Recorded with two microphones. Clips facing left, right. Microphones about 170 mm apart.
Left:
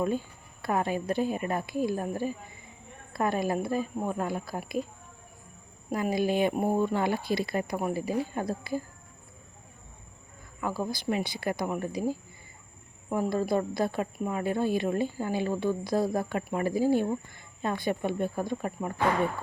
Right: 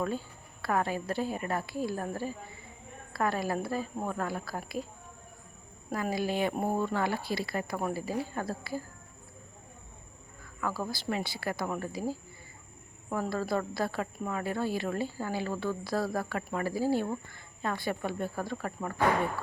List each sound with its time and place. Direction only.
0.0 s speech: 15° left (ahead or behind)
5.9 s speech: 20° left (ahead or behind)
10.6 s speech: 20° left (ahead or behind)